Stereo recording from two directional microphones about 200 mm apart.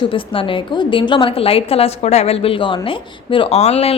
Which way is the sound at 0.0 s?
25° left (ahead or behind).